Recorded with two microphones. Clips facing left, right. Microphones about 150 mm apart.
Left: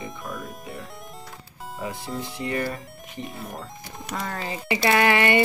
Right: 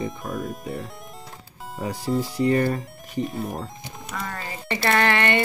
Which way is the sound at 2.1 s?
35° right (ahead or behind).